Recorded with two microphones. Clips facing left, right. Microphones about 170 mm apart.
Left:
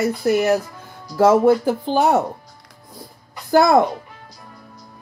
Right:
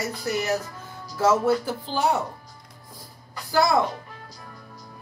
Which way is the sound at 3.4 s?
55° left (ahead or behind).